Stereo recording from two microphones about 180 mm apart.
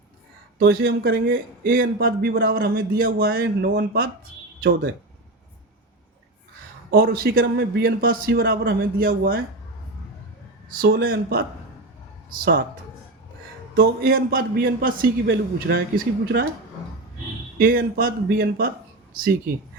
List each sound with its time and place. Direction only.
0.6 s a man's voice: 60° right (ahead or behind)
6.9 s a man's voice: 55° right (ahead or behind)
10.7 s speech: 55° right (ahead or behind)
13.7 s a man's voice: 55° right (ahead or behind)
17.6 s a man's voice: 50° right (ahead or behind)